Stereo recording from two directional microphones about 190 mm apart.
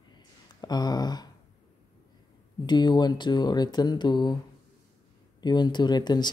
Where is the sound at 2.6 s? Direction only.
25° left (ahead or behind).